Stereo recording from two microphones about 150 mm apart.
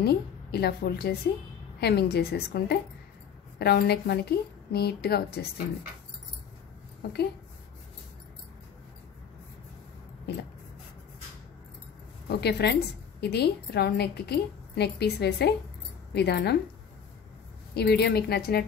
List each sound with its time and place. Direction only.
0.0 s a woman's voice: 90° left
7.0 s a woman's voice: 90° left
12.3 s a woman's voice: 90° left
17.7 s a woman's voice: 90° left